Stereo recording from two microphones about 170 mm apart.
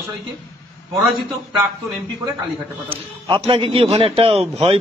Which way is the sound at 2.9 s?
30° right (ahead or behind).